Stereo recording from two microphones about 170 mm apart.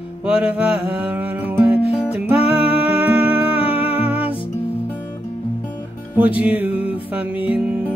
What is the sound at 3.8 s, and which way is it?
Music, 35° left (ahead or behind).